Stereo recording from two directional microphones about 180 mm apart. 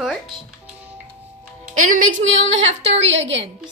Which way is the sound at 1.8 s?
45° right (ahead or behind).